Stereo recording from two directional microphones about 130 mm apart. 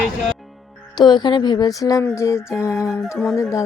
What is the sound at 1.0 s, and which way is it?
Speech, 35° left (ahead or behind).